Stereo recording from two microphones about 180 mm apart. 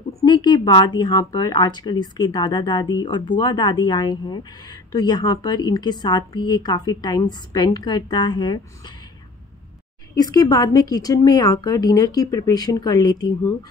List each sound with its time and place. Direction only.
0.2 s speech: 25° left (ahead or behind)
10.1 s speech: 20° left (ahead or behind)